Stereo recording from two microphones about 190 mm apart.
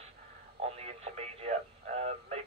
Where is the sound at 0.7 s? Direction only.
35° right (ahead or behind).